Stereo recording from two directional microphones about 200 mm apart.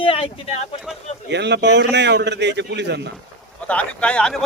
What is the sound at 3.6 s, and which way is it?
Speech, 5° left (ahead or behind).